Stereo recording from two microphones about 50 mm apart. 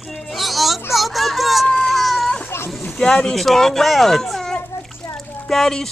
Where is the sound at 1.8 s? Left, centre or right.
Centre.